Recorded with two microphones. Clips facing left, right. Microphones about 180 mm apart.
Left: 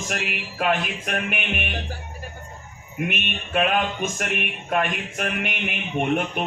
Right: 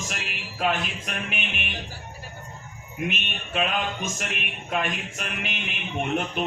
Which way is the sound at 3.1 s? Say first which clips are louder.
Left 5 dB; 55° left (ahead or behind).